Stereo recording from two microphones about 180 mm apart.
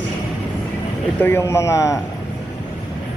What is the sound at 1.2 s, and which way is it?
Speech, 15° left (ahead or behind).